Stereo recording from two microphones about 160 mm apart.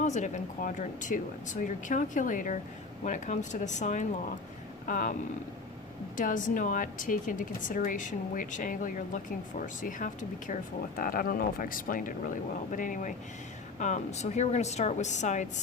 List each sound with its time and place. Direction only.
0.0 s speech: 50° left (ahead or behind)
6.1 s speech: 55° left (ahead or behind)